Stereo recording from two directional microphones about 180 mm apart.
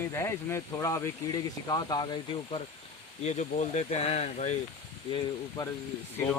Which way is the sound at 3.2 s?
40° left (ahead or behind).